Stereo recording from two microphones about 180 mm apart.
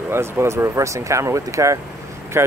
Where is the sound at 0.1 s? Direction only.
15° right (ahead or behind).